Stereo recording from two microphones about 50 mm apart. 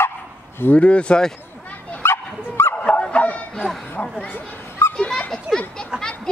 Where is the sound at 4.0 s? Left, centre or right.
Left.